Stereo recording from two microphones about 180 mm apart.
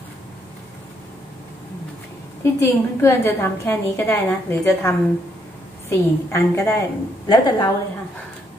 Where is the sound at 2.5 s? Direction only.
15° left (ahead or behind).